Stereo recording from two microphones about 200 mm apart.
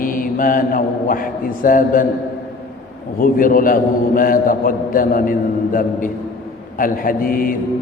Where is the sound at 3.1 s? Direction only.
45° left (ahead or behind).